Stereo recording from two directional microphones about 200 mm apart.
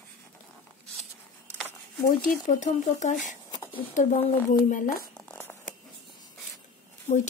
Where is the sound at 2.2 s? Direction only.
40° left (ahead or behind).